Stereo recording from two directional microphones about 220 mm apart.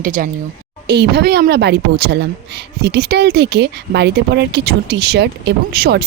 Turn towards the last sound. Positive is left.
turn(degrees=-45)  # may be behind; listen again after turning